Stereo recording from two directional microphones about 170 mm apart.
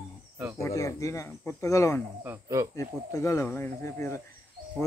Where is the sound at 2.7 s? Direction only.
15° left (ahead or behind).